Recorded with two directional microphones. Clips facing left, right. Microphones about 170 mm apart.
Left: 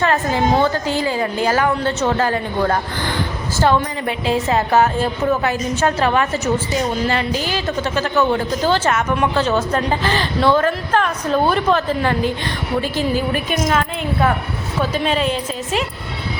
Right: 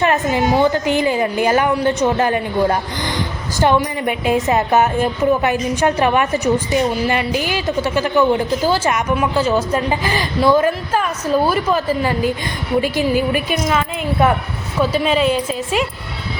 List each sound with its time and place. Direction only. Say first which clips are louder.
0.0 s a woman's voice: right 1 dB; 15° right (ahead or behind)